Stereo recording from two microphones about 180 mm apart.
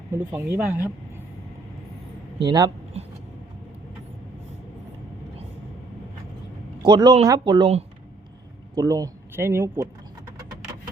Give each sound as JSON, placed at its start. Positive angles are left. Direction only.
{"t": 0.1, "sound": "speech", "side_deg": -10}
{"t": 2.5, "sound": "speech", "side_deg": -25}
{"t": 6.8, "sound": "speech", "side_deg": -25}
{"t": 8.7, "sound": "speech", "side_deg": -20}